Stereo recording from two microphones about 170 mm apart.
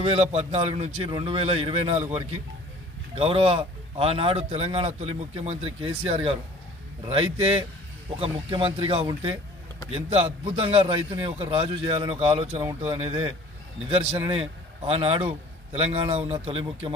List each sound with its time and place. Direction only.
0.0 s speech: 35° right (ahead or behind)
3.2 s speech: 35° right (ahead or behind)
14.8 s speech: 35° right (ahead or behind)